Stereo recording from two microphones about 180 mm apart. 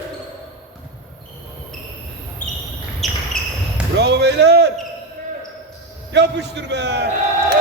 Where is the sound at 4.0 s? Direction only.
70° right (ahead or behind).